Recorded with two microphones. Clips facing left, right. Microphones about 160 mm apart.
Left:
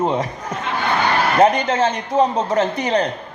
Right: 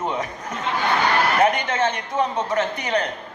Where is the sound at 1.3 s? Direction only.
30° left (ahead or behind).